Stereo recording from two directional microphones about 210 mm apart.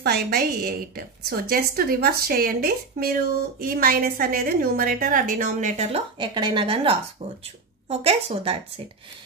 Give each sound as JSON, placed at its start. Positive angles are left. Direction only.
{"t": 0.0, "sound": "a woman's voice", "side_deg": -45}